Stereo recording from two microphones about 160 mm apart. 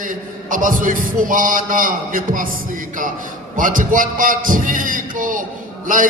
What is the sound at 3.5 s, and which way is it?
A man's voice, 55° right (ahead or behind).